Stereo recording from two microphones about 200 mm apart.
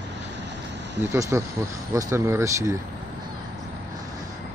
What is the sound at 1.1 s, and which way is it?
Speech, 15° right (ahead or behind).